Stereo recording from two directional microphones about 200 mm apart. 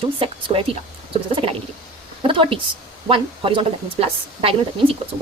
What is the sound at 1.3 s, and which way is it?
A woman's voice, 30° right (ahead or behind).